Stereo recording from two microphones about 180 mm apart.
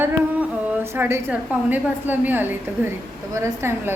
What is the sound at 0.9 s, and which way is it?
A woman's voice, 10° right (ahead or behind).